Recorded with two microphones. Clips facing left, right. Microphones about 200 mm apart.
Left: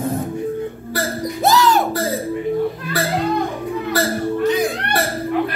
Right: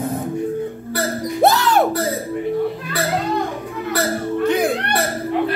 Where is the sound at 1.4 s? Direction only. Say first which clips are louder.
Even; 60° right (ahead or behind).